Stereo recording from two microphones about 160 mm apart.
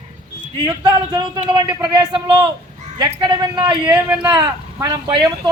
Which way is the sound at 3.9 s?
10° right (ahead or behind).